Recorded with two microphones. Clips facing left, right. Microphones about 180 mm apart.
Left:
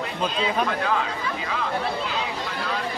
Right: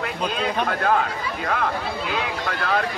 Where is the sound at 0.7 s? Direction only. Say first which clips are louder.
Right 3 dB; 50° right (ahead or behind).